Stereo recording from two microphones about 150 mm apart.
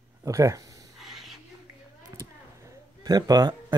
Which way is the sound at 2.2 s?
25° right (ahead or behind).